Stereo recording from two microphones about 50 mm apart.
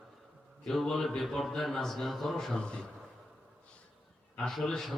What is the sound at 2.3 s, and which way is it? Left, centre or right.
Speech, centre.